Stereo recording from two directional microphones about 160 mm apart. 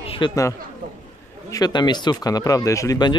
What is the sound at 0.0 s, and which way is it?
Chatter, 35° left (ahead or behind).